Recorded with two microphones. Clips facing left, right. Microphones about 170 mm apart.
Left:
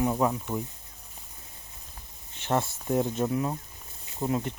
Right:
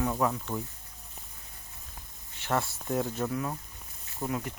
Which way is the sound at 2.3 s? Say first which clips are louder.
Left 3 dB; 20° left (ahead or behind).